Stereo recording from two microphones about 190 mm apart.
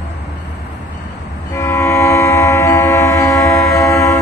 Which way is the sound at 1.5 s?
15° left (ahead or behind).